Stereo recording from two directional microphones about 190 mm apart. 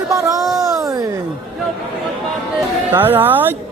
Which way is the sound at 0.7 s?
20° right (ahead or behind).